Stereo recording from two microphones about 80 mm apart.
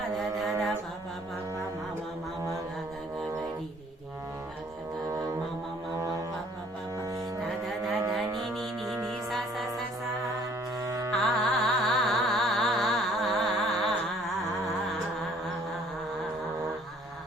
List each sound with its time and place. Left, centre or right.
0.2 s a sound: centre
6.0 s music: right
8.4 s music: centre
10.8 s carnatic music: right
11.1 s music: centre